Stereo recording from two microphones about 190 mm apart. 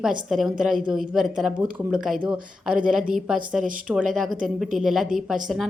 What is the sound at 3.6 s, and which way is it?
Speech, 45° right (ahead or behind).